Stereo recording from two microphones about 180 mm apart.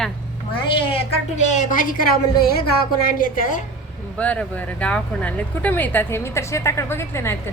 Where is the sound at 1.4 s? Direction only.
40° left (ahead or behind).